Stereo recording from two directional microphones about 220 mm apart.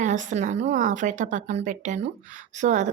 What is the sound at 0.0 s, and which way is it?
A woman's voice, 35° right (ahead or behind).